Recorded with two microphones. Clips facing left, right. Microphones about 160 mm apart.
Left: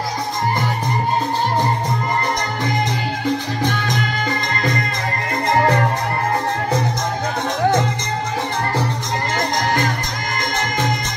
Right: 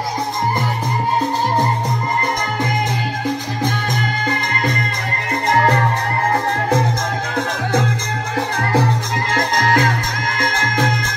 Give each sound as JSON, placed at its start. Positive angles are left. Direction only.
{"t": 9.3, "sound": "music", "side_deg": -90}